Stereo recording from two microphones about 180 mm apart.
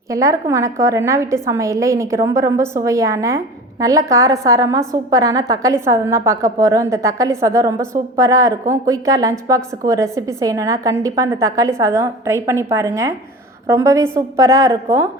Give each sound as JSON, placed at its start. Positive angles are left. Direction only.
{"t": 0.1, "sound": "a woman's voice", "side_deg": -15}